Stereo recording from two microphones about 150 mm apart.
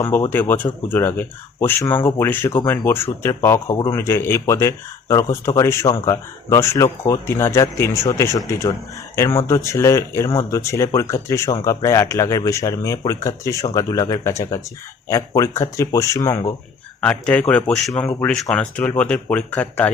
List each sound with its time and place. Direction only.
0.0 s speech: 15° left (ahead or behind)
17.0 s speech: 10° left (ahead or behind)